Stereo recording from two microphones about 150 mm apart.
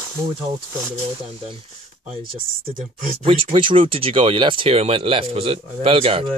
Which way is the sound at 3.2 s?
35° right (ahead or behind).